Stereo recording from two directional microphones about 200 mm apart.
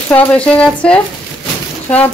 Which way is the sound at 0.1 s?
10° left (ahead or behind).